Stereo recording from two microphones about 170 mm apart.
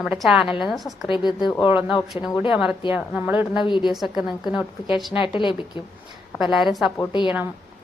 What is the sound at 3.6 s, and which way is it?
Speech, 25° left (ahead or behind).